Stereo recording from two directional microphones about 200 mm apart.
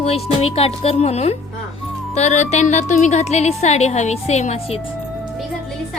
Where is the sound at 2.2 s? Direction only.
35° left (ahead or behind).